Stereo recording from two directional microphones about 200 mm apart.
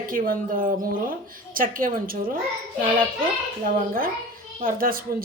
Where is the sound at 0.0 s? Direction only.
45° right (ahead or behind).